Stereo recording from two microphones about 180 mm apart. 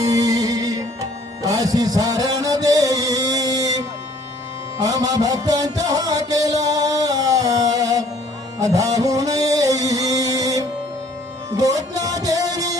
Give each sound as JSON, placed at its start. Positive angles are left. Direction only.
{"t": 0.0, "sound": "music", "side_deg": -20}